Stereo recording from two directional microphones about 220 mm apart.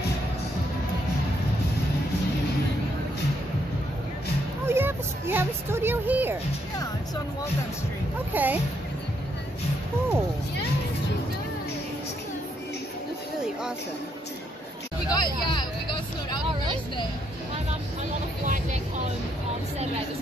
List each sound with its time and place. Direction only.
4.6 s a sound: 10° right (ahead or behind)
8.3 s speech: 10° right (ahead or behind)
15.0 s speech: 20° left (ahead or behind)